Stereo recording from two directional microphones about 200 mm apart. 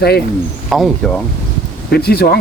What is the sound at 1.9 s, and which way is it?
Speech, 50° left (ahead or behind).